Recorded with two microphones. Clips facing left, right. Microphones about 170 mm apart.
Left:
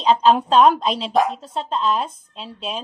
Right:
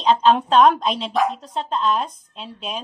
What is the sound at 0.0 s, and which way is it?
Speech, 10° left (ahead or behind).